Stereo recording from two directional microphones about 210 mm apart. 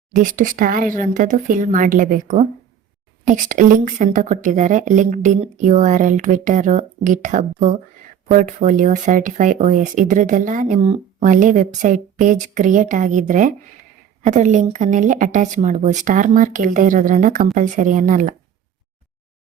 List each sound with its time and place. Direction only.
0.1 s speech: 40° right (ahead or behind)